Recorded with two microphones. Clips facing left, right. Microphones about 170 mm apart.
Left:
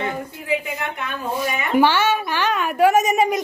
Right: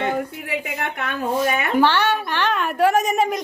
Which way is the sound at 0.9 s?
65° right (ahead or behind).